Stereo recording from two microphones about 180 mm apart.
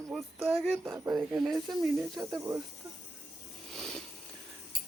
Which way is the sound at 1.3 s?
Centre (ahead or behind).